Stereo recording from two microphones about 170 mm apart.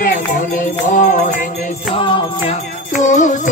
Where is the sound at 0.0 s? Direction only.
55° left (ahead or behind).